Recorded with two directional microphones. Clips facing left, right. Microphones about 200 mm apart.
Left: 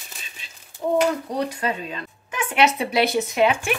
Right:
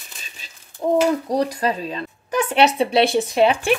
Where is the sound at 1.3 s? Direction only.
40° right (ahead or behind).